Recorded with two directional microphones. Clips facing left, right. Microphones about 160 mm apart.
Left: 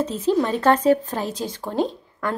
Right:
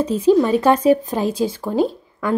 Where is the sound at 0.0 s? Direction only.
10° right (ahead or behind).